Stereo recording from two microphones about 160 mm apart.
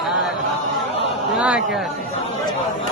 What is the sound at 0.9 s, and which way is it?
Chatter, 35° left (ahead or behind).